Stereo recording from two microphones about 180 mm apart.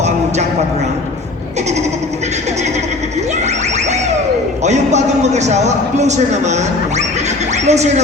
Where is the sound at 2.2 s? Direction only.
40° right (ahead or behind).